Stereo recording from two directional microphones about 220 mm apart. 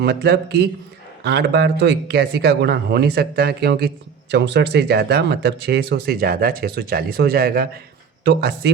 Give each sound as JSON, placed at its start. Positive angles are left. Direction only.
{"t": 0.0, "sound": "speech", "side_deg": -50}